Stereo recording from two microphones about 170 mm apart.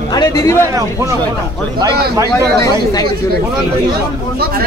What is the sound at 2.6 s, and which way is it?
Speech, 20° left (ahead or behind).